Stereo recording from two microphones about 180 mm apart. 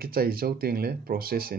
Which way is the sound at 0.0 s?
55° right (ahead or behind).